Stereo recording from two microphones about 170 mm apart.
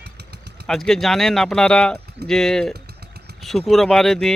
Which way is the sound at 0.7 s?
Centre (ahead or behind).